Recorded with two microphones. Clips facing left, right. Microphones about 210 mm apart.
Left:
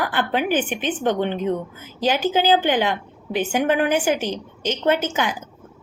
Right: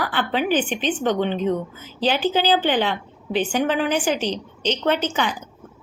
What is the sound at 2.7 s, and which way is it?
Speech, 10° left (ahead or behind).